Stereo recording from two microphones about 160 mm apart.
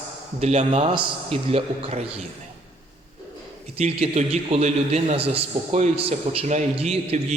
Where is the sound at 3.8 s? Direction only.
40° right (ahead or behind).